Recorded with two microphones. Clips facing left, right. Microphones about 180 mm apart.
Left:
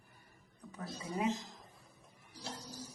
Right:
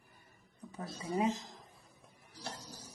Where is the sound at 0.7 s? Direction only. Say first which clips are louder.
Right 3 dB; 30° right (ahead or behind).